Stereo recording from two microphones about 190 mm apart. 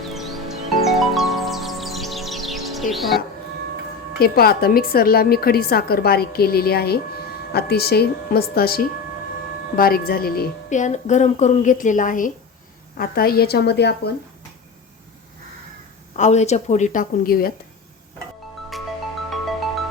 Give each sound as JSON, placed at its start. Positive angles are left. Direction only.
{"t": 0.1, "sound": "music", "side_deg": 0}
{"t": 4.2, "sound": "a woman's voice", "side_deg": 55}
{"t": 16.1, "sound": "a woman's voice", "side_deg": 40}
{"t": 19.3, "sound": "music", "side_deg": 0}